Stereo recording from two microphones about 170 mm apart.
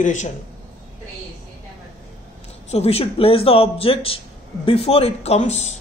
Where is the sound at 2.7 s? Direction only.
35° left (ahead or behind).